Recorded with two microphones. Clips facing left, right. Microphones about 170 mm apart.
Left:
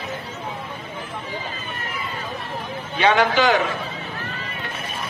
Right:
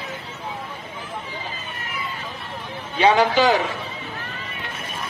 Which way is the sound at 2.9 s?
30° right (ahead or behind).